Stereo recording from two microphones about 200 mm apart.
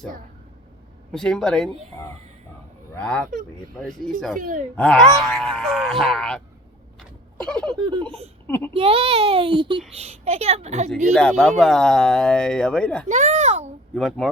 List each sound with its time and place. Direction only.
1.1 s speech: 5° left (ahead or behind)
4.4 s a woman's voice: 40° right (ahead or behind)
4.8 s speech: 5° left (ahead or behind)
7.8 s a child's voice: 20° right (ahead or behind)
8.4 s speech: 10° left (ahead or behind)
8.7 s a child's voice: 25° right (ahead or behind)
11.1 s speech: 5° left (ahead or behind)
13.1 s a woman's voice: 35° right (ahead or behind)
13.9 s speech: centre (ahead or behind)